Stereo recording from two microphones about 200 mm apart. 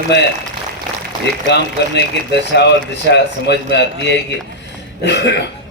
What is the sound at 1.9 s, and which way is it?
A man's voice, 60° left (ahead or behind).